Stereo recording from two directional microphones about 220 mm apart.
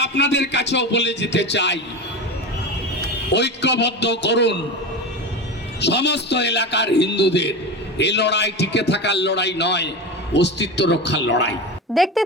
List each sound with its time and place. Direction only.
0.0 s a man's voice: 50° left (ahead or behind)
3.3 s a man's voice: 50° left (ahead or behind)
5.8 s a man's voice: 50° left (ahead or behind)
11.9 s speech: centre (ahead or behind)